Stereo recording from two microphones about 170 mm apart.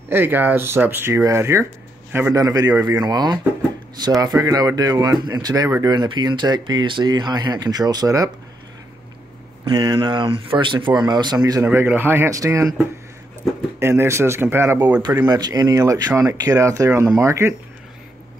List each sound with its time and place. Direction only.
0.1 s speech: 10° right (ahead or behind)
9.7 s speech: 30° right (ahead or behind)